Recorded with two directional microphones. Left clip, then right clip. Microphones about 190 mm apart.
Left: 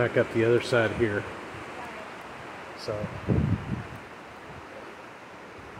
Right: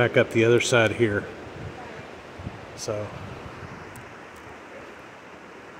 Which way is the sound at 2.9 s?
25° right (ahead or behind).